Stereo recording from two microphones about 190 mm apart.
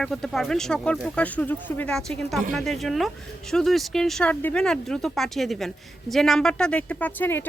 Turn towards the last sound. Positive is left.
turn(degrees=10)  # may be behind; listen again after turning